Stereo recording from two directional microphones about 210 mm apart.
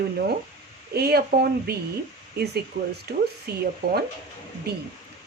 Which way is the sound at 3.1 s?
50° right (ahead or behind).